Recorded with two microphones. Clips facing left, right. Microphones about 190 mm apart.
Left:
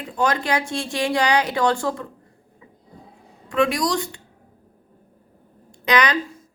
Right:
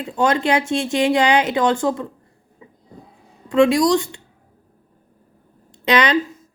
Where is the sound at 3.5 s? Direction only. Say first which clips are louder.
Right 6 dB; 25° right (ahead or behind).